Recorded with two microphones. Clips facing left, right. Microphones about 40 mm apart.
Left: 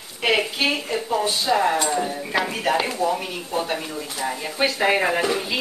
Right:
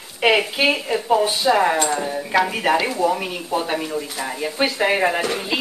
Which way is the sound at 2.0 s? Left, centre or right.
Centre.